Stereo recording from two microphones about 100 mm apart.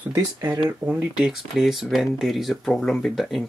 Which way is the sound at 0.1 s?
35° right (ahead or behind).